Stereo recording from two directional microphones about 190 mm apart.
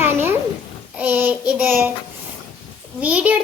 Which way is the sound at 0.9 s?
10° right (ahead or behind).